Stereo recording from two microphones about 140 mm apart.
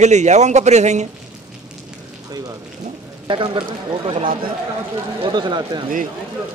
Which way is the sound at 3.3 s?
35° right (ahead or behind).